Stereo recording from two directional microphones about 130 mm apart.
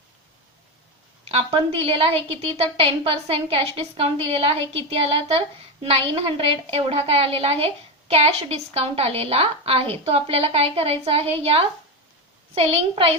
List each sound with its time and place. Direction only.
1.3 s a woman's voice: 50° right (ahead or behind)